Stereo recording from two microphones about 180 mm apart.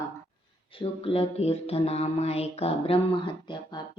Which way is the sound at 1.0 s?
30° left (ahead or behind).